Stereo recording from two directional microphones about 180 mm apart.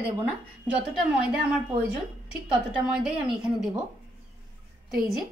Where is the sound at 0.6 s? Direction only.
5° right (ahead or behind).